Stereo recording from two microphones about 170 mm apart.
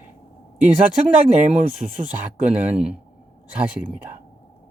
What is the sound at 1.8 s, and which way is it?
Speech, 45° right (ahead or behind).